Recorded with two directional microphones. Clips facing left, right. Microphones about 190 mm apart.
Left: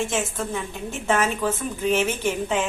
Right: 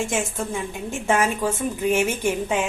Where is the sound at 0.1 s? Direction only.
10° right (ahead or behind).